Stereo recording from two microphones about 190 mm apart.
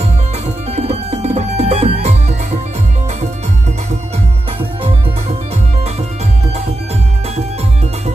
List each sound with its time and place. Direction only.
0.7 s music: 35° right (ahead or behind)